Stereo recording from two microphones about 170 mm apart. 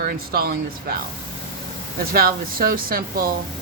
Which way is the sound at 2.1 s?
60° right (ahead or behind).